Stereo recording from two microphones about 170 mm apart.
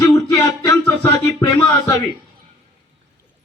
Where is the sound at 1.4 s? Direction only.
25° left (ahead or behind).